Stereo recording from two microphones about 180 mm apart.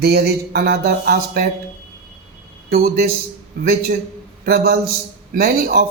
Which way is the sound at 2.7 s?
55° right (ahead or behind).